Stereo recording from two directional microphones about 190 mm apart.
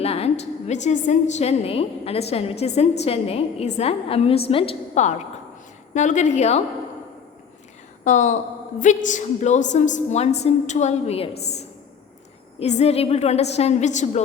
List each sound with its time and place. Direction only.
0.0 s a woman's voice: 35° left (ahead or behind)
8.0 s a woman's voice: 40° left (ahead or behind)
12.5 s a woman's voice: 35° left (ahead or behind)